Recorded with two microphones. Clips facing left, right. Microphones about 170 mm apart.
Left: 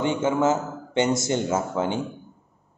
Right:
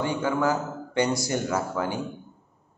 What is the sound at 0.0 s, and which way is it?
Speech, 20° left (ahead or behind).